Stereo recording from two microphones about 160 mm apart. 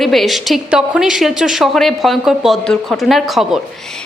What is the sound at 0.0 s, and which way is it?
A woman's voice, centre (ahead or behind).